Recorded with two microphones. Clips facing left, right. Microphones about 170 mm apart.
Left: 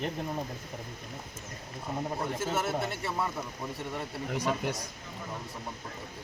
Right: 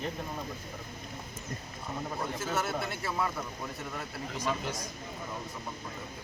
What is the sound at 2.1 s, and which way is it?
Speech, 25° left (ahead or behind).